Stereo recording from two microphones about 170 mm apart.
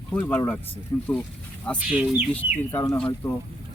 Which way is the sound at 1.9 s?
5° right (ahead or behind).